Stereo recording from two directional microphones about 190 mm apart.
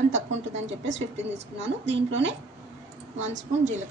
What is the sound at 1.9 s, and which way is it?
Speech, 75° right (ahead or behind).